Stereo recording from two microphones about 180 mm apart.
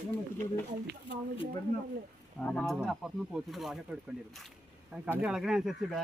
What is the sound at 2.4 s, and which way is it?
Speech, 5° left (ahead or behind).